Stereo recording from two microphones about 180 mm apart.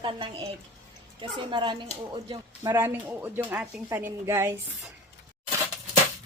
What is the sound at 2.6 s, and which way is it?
Speech, 15° right (ahead or behind).